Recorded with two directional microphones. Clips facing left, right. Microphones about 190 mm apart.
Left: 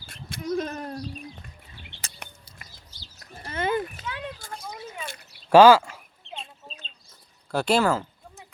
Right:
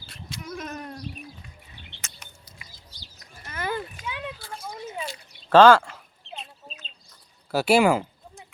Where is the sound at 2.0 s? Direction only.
35° left (ahead or behind).